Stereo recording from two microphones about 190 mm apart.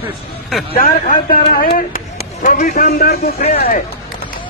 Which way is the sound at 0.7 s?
45° left (ahead or behind).